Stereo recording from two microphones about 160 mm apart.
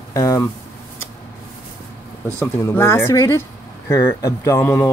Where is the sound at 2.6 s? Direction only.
15° left (ahead or behind).